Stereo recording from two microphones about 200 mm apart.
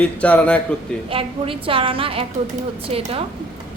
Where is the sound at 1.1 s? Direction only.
25° right (ahead or behind).